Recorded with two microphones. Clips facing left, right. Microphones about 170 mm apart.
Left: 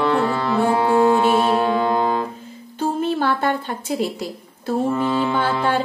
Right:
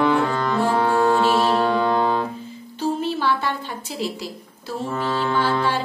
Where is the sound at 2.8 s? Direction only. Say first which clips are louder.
Left 2 dB; 50° left (ahead or behind).